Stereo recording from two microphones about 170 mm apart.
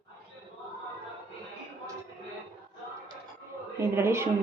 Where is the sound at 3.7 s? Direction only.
15° right (ahead or behind).